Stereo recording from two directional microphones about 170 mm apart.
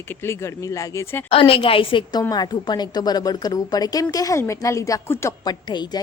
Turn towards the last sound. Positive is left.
turn(degrees=25)  # may be behind; listen again after turning